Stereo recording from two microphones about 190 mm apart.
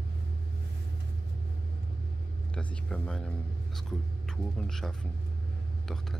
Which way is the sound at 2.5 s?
5° left (ahead or behind).